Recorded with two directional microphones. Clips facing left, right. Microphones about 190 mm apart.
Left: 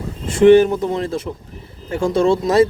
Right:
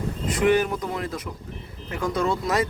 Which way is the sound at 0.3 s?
25° left (ahead or behind).